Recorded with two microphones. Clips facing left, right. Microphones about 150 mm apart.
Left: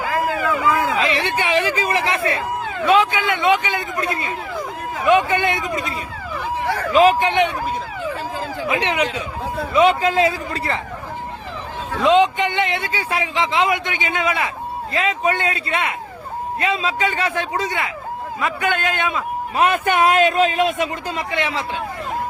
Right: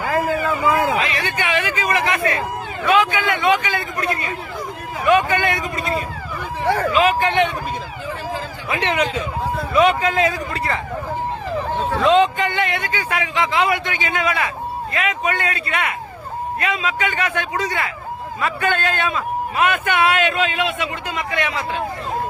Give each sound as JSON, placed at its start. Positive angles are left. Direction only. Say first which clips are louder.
{"t": 0.4, "sound": "a sound", "louder": "right 1 dB", "side_deg": -30}
{"t": 0.9, "sound": "a man's voice", "louder": "left 2 dB", "side_deg": 30}
{"t": 6.9, "sound": "a man's voice", "louder": "left 6 dB", "side_deg": 35}
{"t": 7.2, "sound": "a man's voice", "louder": "even", "side_deg": 20}
{"t": 8.7, "sound": "a man's voice", "louder": "right 1 dB", "side_deg": 10}
{"t": 9.7, "sound": "a man's voice", "louder": "left 1 dB", "side_deg": 25}
{"t": 12.0, "sound": "a man's voice", "louder": "left 1 dB", "side_deg": 15}
{"t": 19.5, "sound": "a man's voice", "louder": "left 2 dB", "side_deg": 35}
{"t": 21.3, "sound": "a man's voice", "louder": "even", "side_deg": 25}